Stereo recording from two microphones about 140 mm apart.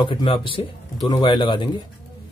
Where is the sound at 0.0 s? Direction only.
35° left (ahead or behind).